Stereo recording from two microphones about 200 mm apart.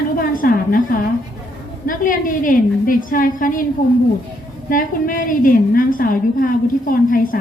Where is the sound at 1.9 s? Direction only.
40° left (ahead or behind).